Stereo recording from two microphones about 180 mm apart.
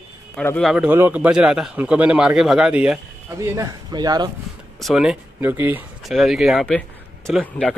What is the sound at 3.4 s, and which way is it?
Speech, 20° right (ahead or behind).